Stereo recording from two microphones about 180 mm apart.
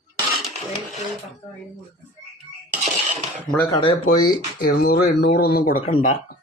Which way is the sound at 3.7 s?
30° left (ahead or behind).